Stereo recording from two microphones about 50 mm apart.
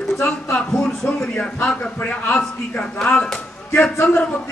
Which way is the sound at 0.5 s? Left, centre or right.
Left.